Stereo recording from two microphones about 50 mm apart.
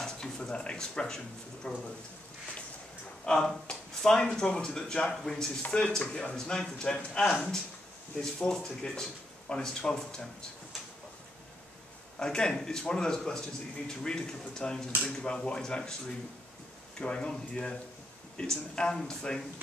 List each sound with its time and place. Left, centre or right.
0.0 s speech: centre
3.3 s speech: centre
5.6 s speech: left
12.2 s speech: centre
17.0 s speech: centre